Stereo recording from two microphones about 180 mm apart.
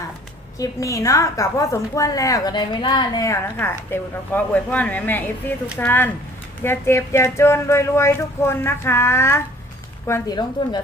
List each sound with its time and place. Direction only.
0.6 s a woman's voice: 15° left (ahead or behind)